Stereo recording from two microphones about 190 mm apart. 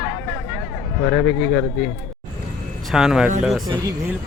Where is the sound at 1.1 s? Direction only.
5° left (ahead or behind).